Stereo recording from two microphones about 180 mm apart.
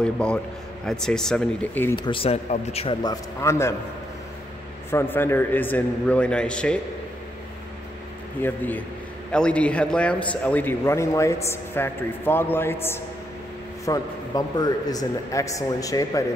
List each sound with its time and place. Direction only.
0.0 s speech: 5° left (ahead or behind)
2.0 s speech: 30° left (ahead or behind)
3.0 s a man's voice: 20° left (ahead or behind)
4.9 s a man's voice: 10° left (ahead or behind)
8.4 s a man's voice: 10° left (ahead or behind)